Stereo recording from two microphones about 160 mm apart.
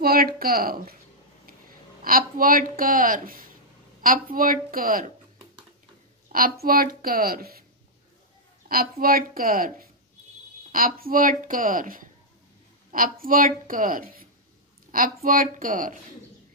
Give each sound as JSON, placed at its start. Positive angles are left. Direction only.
{"t": 0.0, "sound": "a woman's voice", "side_deg": -70}
{"t": 2.0, "sound": "speech", "side_deg": -65}
{"t": 6.2, "sound": "a sound", "side_deg": -65}
{"t": 6.6, "sound": "speech", "side_deg": -65}
{"t": 8.6, "sound": "speech", "side_deg": -65}